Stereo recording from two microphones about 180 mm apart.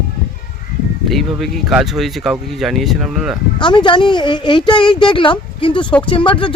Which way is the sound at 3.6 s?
25° left (ahead or behind).